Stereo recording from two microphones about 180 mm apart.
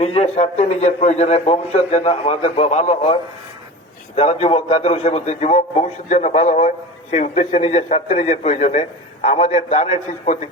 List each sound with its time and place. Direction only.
0.0 s a man's voice: 35° left (ahead or behind)